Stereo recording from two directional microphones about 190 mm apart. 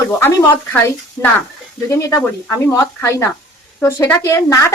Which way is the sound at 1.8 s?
15° left (ahead or behind).